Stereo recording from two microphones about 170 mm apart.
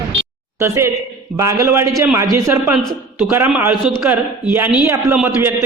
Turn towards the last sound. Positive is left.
turn(degrees=-10)  # may be behind; listen again after turning